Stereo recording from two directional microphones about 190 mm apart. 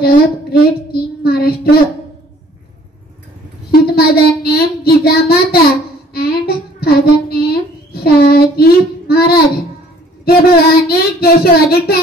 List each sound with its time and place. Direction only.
0.0 s child singing: 55° left (ahead or behind)
3.7 s child singing: 55° left (ahead or behind)
6.1 s a sound: 55° left (ahead or behind)
10.2 s child singing: 55° left (ahead or behind)